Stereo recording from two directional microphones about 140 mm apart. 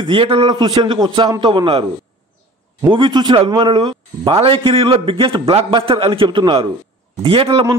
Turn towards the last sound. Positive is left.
turn(degrees=-40)  # may be behind; listen again after turning